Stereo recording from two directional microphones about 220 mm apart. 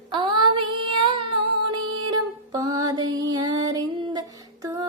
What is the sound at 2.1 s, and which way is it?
Music, 20° right (ahead or behind).